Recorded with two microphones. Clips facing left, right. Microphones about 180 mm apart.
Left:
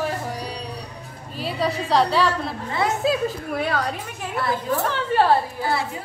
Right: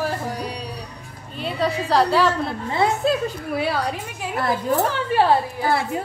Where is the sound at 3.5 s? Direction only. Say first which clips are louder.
Right 3 dB; 10° right (ahead or behind).